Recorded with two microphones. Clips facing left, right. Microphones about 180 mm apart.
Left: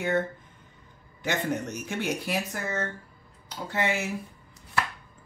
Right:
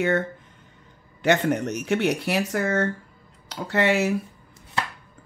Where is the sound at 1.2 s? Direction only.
70° right (ahead or behind).